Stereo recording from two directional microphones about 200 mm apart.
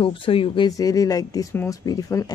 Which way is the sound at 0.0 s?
25° left (ahead or behind).